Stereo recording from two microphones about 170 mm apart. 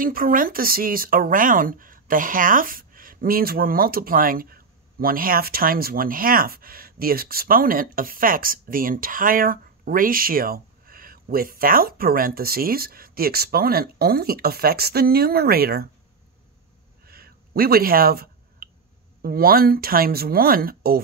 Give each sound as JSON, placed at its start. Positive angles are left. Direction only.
{"t": 0.0, "sound": "speech", "side_deg": -55}
{"t": 17.0, "sound": "a sound", "side_deg": -65}
{"t": 19.2, "sound": "speech", "side_deg": -60}